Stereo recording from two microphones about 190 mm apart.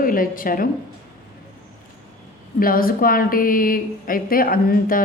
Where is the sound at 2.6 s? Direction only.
50° left (ahead or behind).